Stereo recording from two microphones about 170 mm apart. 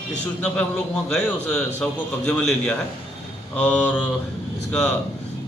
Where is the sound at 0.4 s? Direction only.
5° left (ahead or behind).